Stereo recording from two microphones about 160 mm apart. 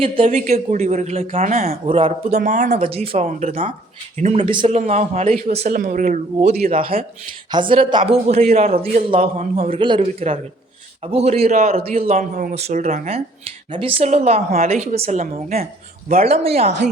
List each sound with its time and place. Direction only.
0.3 s speech: 50° right (ahead or behind)
1.9 s speech: 35° right (ahead or behind)
2.4 s speech: 50° right (ahead or behind)
3.5 s speech: 55° right (ahead or behind)
4.4 s speech: 30° right (ahead or behind)
4.8 s speech: 45° right (ahead or behind)
5.7 s speech: 55° right (ahead or behind)
6.7 s speech: 35° right (ahead or behind)